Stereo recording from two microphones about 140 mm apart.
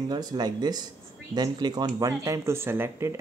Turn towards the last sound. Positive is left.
turn(degrees=-20)  # may be behind; listen again after turning